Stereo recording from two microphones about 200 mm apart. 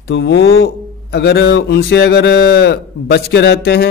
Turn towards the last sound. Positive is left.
turn(degrees=55)  # may be behind; listen again after turning